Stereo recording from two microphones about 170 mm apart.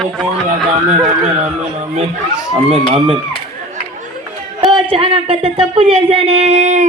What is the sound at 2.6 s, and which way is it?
Speech, 35° right (ahead or behind).